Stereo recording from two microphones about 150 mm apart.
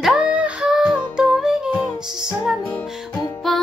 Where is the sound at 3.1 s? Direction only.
25° left (ahead or behind).